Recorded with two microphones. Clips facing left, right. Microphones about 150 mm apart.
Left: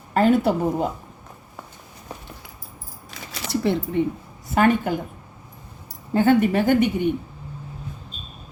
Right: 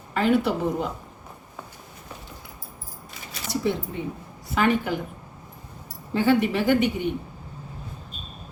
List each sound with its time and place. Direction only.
0.1 s a woman's voice: 45° left (ahead or behind)
3.5 s speech: 65° left (ahead or behind)
4.5 s a woman's voice: 45° left (ahead or behind)
6.1 s a woman's voice: 45° left (ahead or behind)